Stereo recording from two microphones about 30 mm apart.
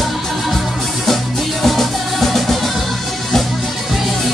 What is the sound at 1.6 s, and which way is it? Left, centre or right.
Music, centre.